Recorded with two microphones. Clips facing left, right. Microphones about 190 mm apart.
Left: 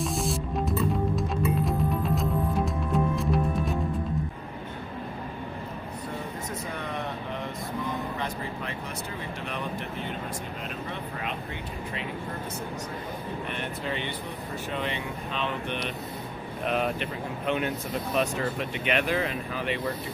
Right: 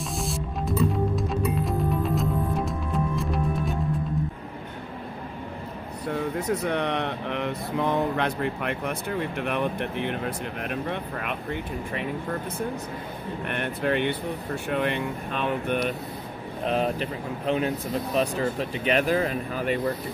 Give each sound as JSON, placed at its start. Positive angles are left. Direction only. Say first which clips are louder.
{"t": 0.2, "sound": "music", "louder": "left 2 dB", "side_deg": 0}
{"t": 6.3, "sound": "speech", "louder": "right 9 dB", "side_deg": -70}
{"t": 13.5, "sound": "speech", "louder": "right 9 dB", "side_deg": -60}
{"t": 16.6, "sound": "speech", "louder": "right 3 dB", "side_deg": -30}